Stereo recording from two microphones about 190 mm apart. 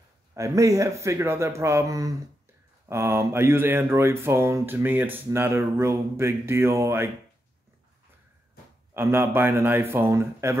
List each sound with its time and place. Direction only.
0.3 s speech: 15° right (ahead or behind)
8.9 s speech: 15° right (ahead or behind)